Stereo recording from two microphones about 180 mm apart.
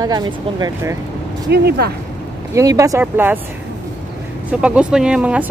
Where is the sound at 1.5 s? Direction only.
60° right (ahead or behind).